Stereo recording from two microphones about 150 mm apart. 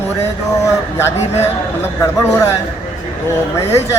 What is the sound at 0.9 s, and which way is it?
Speech, 15° left (ahead or behind).